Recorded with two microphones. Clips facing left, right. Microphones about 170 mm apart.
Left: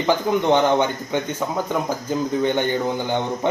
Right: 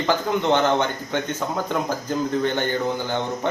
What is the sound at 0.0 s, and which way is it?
Speech, 15° left (ahead or behind).